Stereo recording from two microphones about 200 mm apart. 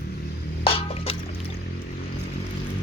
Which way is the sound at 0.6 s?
30° left (ahead or behind).